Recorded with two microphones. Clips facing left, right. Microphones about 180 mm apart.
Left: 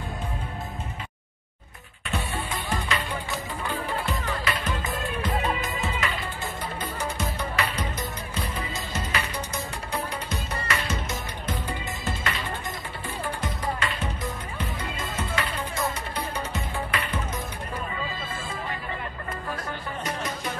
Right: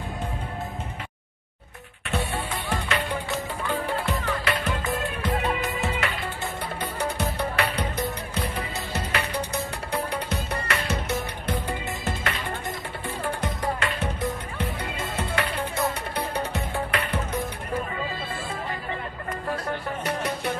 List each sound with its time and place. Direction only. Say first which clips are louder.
2.0 s music: right 2 dB; 65° right (ahead or behind)
13.4 s music: right 1 dB; 65° right (ahead or behind)
19.7 s music: right 4 dB; 65° right (ahead or behind)